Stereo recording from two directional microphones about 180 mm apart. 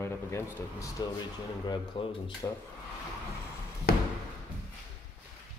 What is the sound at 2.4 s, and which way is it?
Speech, 15° left (ahead or behind).